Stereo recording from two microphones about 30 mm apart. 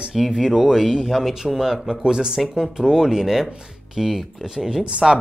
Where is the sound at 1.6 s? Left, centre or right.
Centre.